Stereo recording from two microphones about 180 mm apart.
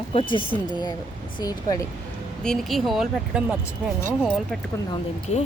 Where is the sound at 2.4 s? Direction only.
5° left (ahead or behind).